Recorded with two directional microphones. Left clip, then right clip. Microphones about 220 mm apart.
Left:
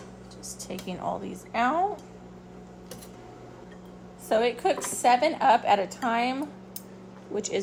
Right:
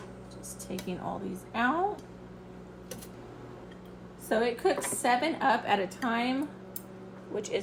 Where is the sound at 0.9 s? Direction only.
30° left (ahead or behind).